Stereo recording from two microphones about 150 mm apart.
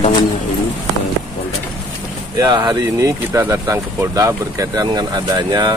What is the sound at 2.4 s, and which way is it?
Speech, 30° right (ahead or behind).